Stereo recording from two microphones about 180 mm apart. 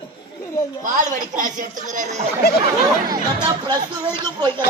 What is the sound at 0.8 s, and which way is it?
Speech, 45° right (ahead or behind).